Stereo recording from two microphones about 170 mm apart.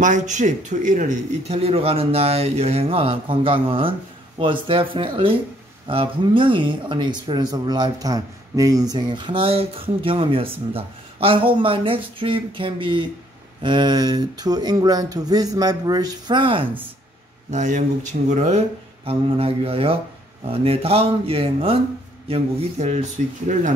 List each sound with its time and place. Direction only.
0.0 s speech: 45° right (ahead or behind); by 16.6 s 30° right (ahead or behind)
17.5 s speech: 45° right (ahead or behind)
19.0 s speech: 35° right (ahead or behind)